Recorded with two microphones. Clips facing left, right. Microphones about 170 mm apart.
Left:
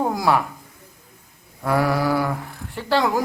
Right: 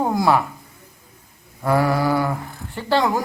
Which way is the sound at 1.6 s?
Centre (ahead or behind).